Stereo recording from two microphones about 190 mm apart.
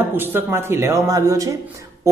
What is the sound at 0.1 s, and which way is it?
Speech, 10° right (ahead or behind).